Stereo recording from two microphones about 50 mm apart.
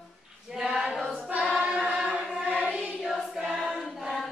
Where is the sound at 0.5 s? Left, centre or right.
Centre.